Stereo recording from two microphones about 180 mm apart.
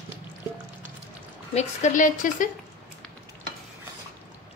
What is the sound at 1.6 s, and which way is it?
Speech, 45° left (ahead or behind).